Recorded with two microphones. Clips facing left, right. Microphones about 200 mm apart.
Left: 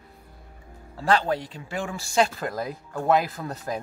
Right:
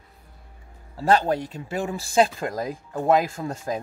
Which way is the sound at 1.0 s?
40° right (ahead or behind).